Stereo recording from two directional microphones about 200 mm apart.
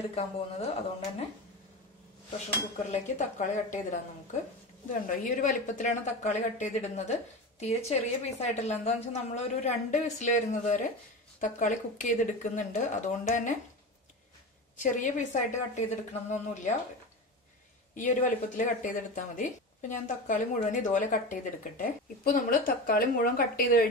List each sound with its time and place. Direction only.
0.1 s a woman's voice: 30° left (ahead or behind)
2.9 s a woman's voice: 35° left (ahead or behind)
14.8 s a woman's voice: 40° left (ahead or behind)
17.9 s a woman's voice: 40° left (ahead or behind)